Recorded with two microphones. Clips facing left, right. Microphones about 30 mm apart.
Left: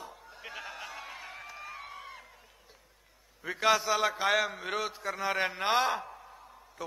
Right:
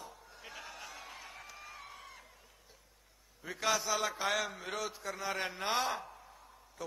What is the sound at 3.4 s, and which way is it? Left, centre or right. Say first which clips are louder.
A man's voice: left 7 dB; left.